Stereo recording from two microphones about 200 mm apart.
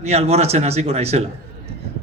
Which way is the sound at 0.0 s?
30° right (ahead or behind).